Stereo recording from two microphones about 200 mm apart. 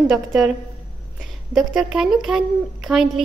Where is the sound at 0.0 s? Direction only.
Centre (ahead or behind).